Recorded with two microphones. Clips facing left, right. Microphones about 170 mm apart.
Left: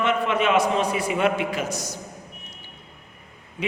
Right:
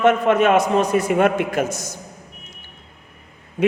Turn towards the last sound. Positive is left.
turn(degrees=-45)  # may be behind; listen again after turning